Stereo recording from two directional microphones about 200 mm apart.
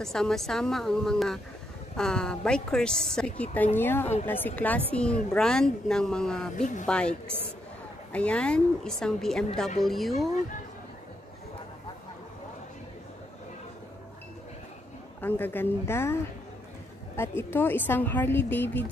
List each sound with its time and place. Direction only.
0.0 s a woman's voice: centre (ahead or behind)
6.6 s speech: 40° left (ahead or behind)
6.9 s a woman's voice: 5° left (ahead or behind)
15.1 s speech: 10° left (ahead or behind)
17.2 s speech: 10° left (ahead or behind)